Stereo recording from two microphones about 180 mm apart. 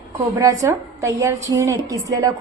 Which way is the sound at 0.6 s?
15° right (ahead or behind).